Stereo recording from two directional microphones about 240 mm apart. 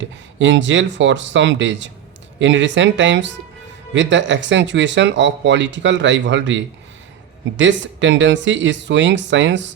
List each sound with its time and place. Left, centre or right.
0.0 s speech: right